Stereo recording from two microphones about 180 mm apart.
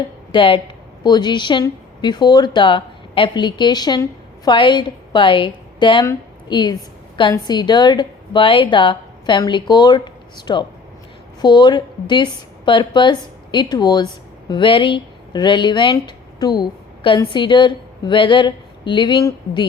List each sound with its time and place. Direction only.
0.3 s a woman's voice: 30° left (ahead or behind)